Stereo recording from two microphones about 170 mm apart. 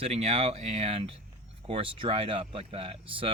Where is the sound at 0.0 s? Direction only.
40° right (ahead or behind).